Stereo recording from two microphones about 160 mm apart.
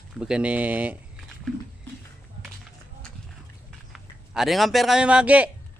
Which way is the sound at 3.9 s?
5° right (ahead or behind).